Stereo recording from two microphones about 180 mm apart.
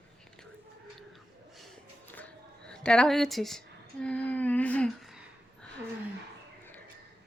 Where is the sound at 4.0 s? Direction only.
5° left (ahead or behind).